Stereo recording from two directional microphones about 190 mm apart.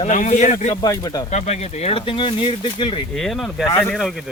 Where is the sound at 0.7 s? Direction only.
20° left (ahead or behind).